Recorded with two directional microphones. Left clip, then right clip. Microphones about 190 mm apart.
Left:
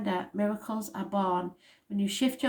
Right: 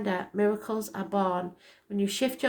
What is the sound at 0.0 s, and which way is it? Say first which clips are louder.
A woman's voice: right 4 dB; 30° right (ahead or behind).